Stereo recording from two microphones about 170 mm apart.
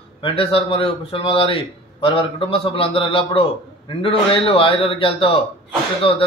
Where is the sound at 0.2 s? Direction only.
35° left (ahead or behind).